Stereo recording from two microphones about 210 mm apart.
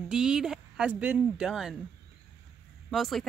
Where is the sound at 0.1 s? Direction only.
5° right (ahead or behind).